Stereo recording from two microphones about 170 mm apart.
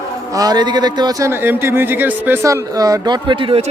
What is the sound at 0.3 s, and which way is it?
A man's voice, 25° right (ahead or behind).